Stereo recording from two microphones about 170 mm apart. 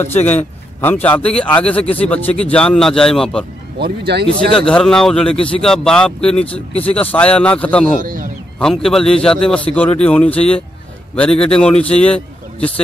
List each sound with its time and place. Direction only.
0.0 s a man's voice: 10° left (ahead or behind)
3.8 s speech: 75° right (ahead or behind)
4.5 s a man's voice: 5° left (ahead or behind)
8.0 s a man's voice: 50° right (ahead or behind)
8.5 s a man's voice: 5° left (ahead or behind)